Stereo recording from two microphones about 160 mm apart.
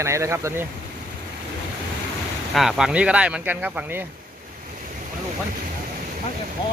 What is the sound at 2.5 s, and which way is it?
Speech, centre (ahead or behind).